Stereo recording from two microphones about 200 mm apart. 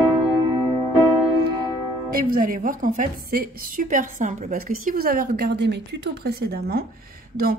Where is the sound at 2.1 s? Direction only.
45° right (ahead or behind).